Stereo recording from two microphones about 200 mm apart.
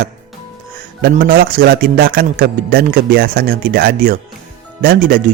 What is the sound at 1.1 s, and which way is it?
Speech, 45° right (ahead or behind).